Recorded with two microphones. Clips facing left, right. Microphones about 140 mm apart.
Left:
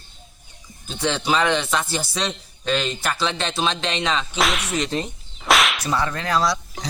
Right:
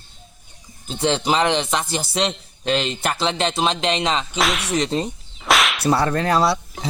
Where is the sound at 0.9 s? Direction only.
30° right (ahead or behind).